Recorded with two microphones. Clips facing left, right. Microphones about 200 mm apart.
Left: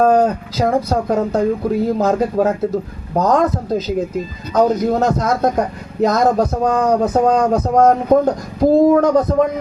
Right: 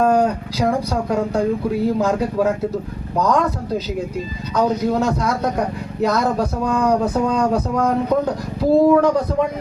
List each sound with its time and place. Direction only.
0.0 s speech: 40° left (ahead or behind)